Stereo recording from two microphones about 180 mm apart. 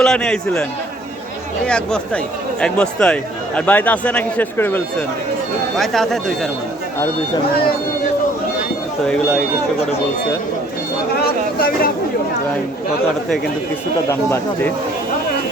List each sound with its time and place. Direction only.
0.0 s a man's voice: 5° left (ahead or behind)
1.6 s a man's voice: 5° left (ahead or behind)
9.0 s a man's voice: 5° left (ahead or behind)
11.2 s vehicle: 55° left (ahead or behind)
14.1 s speech: 15° left (ahead or behind)